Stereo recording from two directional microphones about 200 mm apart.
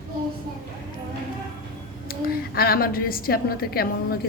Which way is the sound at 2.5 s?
50° left (ahead or behind).